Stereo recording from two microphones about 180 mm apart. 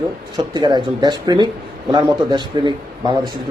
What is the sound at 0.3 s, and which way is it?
A man's voice, 25° right (ahead or behind).